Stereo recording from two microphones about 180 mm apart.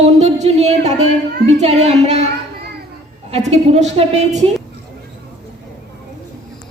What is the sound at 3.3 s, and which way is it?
A woman's voice, 35° right (ahead or behind).